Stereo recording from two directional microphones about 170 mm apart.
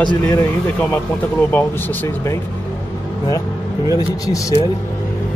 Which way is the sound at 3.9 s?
20° left (ahead or behind).